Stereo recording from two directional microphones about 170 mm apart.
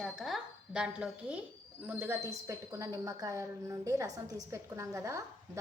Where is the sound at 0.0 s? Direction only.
Centre (ahead or behind).